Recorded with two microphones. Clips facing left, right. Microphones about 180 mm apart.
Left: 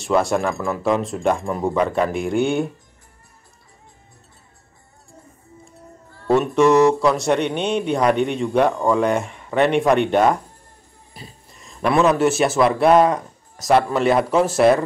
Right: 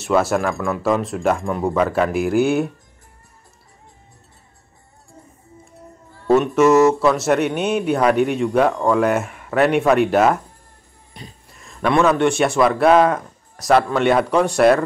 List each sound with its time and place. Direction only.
0.0 s speech: centre (ahead or behind)
6.2 s speech: centre (ahead or behind)
11.1 s a sound: 5° left (ahead or behind)
12.2 s speech: centre (ahead or behind)